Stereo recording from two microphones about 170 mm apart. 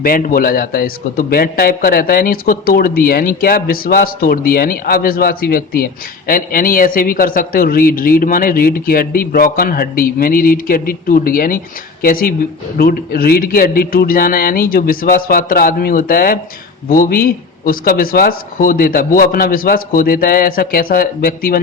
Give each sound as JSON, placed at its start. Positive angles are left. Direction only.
{"t": 0.0, "sound": "a man's voice", "side_deg": 55}